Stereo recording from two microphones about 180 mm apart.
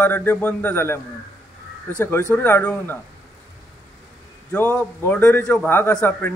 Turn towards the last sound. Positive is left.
turn(degrees=10)  # may be behind; listen again after turning